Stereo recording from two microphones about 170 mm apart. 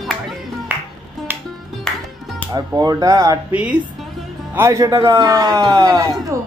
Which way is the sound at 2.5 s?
20° right (ahead or behind).